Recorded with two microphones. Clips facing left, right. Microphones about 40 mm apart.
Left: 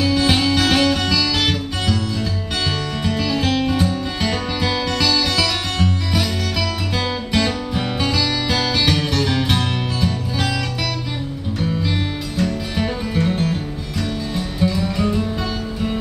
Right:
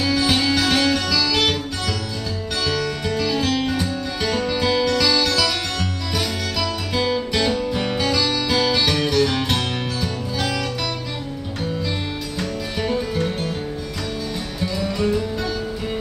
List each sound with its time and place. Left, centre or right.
0.0 s music: centre
1.3 s music: centre
2.6 s music: centre
9.5 s music: centre
12.4 s music: centre